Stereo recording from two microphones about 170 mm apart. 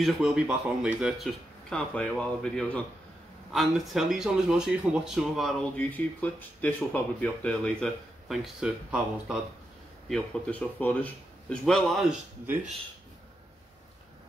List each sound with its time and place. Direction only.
0.0 s speech: 5° right (ahead or behind)